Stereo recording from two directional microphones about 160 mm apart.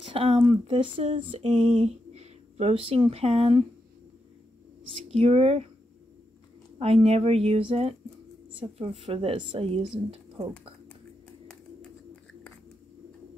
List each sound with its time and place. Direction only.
0.0 s a sound: 40° right (ahead or behind)
5.0 s speech: 40° right (ahead or behind)
6.8 s speech: 40° right (ahead or behind)